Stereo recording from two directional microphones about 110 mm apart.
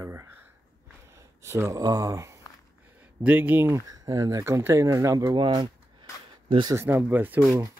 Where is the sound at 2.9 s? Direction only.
10° right (ahead or behind).